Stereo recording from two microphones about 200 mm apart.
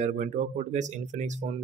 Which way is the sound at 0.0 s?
35° right (ahead or behind).